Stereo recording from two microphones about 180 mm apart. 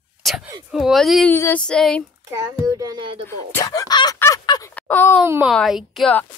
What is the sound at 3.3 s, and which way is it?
Speech, 15° left (ahead or behind).